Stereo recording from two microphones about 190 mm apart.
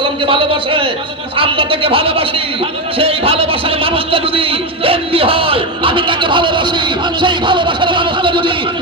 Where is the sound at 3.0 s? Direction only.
30° right (ahead or behind).